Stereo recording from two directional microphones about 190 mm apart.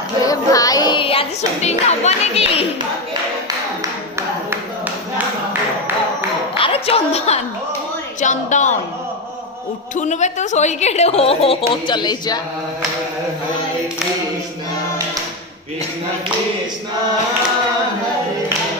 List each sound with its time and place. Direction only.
0.2 s music: 20° left (ahead or behind)
6.5 s a sound: 30° left (ahead or behind)
8.2 s a woman's voice: 40° left (ahead or behind)
9.9 s a woman's voice: 40° left (ahead or behind); by 12.4 s 20° left (ahead or behind)